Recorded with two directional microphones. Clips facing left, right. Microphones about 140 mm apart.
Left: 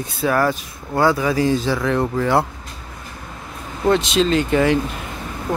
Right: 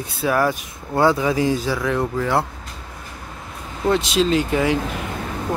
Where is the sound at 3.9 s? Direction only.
5° right (ahead or behind).